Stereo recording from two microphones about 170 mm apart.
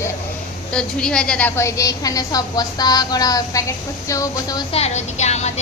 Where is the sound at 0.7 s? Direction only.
5° left (ahead or behind); by 4.6 s 20° left (ahead or behind).